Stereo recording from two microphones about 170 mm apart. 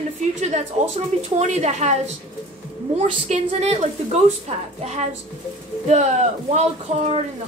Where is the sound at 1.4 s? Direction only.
40° right (ahead or behind).